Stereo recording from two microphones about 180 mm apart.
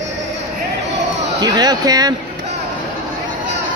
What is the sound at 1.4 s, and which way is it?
Speech, 20° right (ahead or behind).